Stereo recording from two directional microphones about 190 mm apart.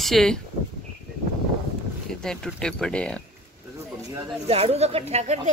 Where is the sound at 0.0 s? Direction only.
Centre (ahead or behind).